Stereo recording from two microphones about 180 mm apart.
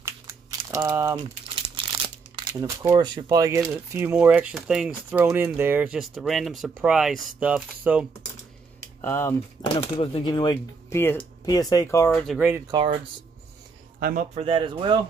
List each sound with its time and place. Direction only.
0.0 s a sound: 15° right (ahead or behind)
1.5 s crumpling: 30° right (ahead or behind)
2.5 s speech: 15° right (ahead or behind)
8.8 s typing: 15° left (ahead or behind)
9.8 s speech: 30° left (ahead or behind)
11.0 s speech: 10° left (ahead or behind)
12.3 s speech: 10° right (ahead or behind)
12.7 s speech: 25° right (ahead or behind)
13.9 s a man's voice: 55° right (ahead or behind)
14.3 s speech: 30° right (ahead or behind)